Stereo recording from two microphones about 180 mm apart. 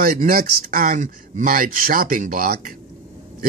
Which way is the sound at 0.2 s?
50° right (ahead or behind).